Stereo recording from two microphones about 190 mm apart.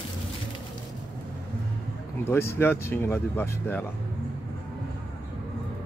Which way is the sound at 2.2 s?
10° left (ahead or behind).